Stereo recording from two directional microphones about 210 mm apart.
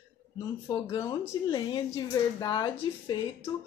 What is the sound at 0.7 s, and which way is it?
Speech, 25° left (ahead or behind).